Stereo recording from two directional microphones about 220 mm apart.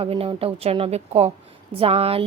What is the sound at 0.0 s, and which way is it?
Speech, 25° right (ahead or behind).